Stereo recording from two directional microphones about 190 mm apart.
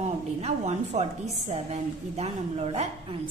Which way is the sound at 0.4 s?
35° right (ahead or behind).